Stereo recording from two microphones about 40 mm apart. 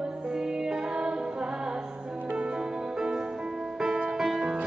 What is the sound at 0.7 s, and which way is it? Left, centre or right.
Music, right.